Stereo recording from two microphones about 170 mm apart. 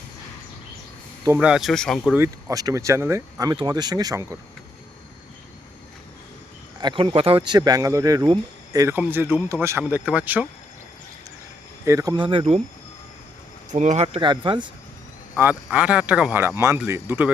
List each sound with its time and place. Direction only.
1.4 s speech: 5° right (ahead or behind)
2.1 s speech: 20° right (ahead or behind)
6.7 s speech: 30° right (ahead or behind); by 10.4 s 10° right (ahead or behind)
11.9 s speech: 20° right (ahead or behind); by 12.6 s 35° right (ahead or behind)
13.7 s speech: 45° right (ahead or behind); by 14.7 s 30° right (ahead or behind)
15.4 s speech: 10° right (ahead or behind)